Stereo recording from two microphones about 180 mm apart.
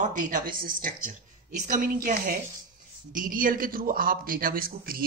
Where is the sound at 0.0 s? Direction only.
45° right (ahead or behind).